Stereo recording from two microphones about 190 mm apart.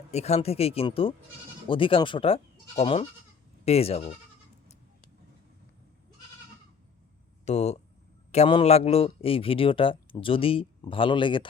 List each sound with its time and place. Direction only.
0.1 s speech: 35° left (ahead or behind)
7.4 s speech: 35° left (ahead or behind)